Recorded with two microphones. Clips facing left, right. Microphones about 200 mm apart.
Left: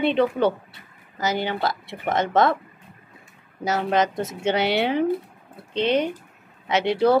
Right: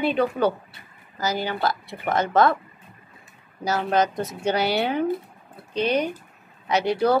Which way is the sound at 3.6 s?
20° left (ahead or behind).